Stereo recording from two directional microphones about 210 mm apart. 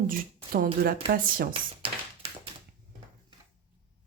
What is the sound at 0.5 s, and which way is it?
Speech, 45° right (ahead or behind).